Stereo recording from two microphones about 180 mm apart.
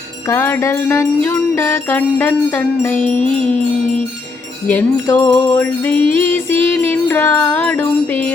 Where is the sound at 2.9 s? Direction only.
30° right (ahead or behind).